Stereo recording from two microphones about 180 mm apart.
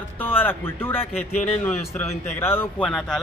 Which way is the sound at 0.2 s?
10° left (ahead or behind).